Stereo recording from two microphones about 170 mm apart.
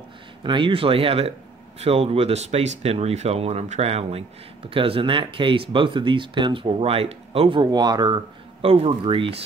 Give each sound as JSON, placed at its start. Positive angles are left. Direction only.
{"t": 0.4, "sound": "speech", "side_deg": -30}